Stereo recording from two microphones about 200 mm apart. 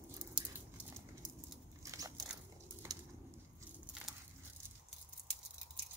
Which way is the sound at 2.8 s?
15° right (ahead or behind).